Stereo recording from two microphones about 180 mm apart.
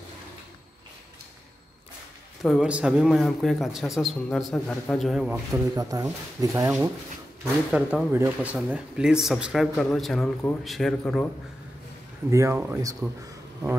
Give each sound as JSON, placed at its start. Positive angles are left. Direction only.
{"t": 2.4, "sound": "a man's voice", "side_deg": -5}
{"t": 5.3, "sound": "speech", "side_deg": -20}
{"t": 7.7, "sound": "a man's voice", "side_deg": -5}
{"t": 12.3, "sound": "speech", "side_deg": -15}